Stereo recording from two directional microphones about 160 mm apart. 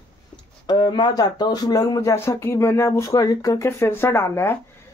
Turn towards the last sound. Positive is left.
turn(degrees=15)  # may be behind; listen again after turning